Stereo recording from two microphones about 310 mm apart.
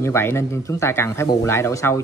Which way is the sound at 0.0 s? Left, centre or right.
Centre.